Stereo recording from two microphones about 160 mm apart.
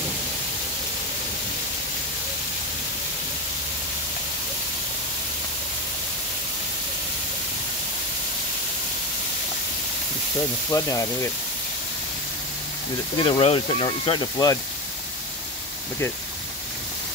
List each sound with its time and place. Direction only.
10.7 s speech: 20° left (ahead or behind)
13.2 s speech: 35° left (ahead or behind)